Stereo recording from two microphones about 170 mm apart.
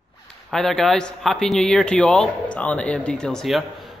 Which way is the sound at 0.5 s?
Centre (ahead or behind).